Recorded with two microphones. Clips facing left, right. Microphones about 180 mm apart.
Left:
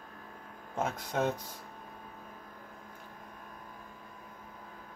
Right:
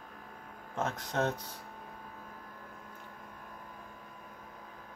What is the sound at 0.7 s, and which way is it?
Speech, 10° left (ahead or behind).